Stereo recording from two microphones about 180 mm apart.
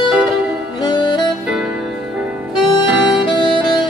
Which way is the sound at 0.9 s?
25° left (ahead or behind).